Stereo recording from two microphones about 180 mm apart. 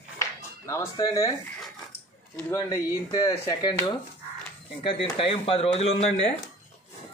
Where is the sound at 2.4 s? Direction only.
10° left (ahead or behind); by 5.9 s 35° left (ahead or behind).